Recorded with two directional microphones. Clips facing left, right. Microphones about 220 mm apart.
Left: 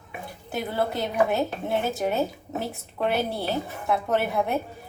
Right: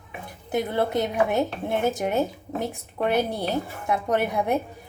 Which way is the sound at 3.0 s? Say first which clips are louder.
Right 2 dB; 20° right (ahead or behind).